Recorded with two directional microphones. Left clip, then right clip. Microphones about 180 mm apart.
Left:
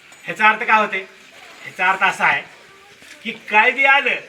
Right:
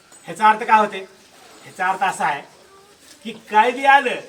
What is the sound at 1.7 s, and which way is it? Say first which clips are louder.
Speech: left 3 dB; 25° right (ahead or behind).